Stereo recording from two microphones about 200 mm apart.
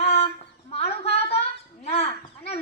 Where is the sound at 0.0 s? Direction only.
30° left (ahead or behind).